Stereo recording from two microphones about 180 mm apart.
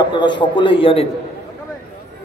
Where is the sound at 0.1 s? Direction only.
25° left (ahead or behind).